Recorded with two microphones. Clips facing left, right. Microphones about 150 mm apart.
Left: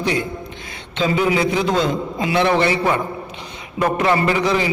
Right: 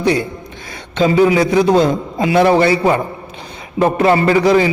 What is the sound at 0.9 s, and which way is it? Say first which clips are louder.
A man's voice: right 6 dB; 35° right (ahead or behind).